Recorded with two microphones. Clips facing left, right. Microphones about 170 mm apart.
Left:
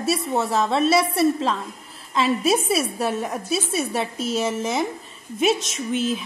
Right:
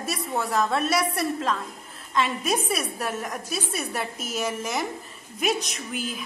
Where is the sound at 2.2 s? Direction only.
30° left (ahead or behind).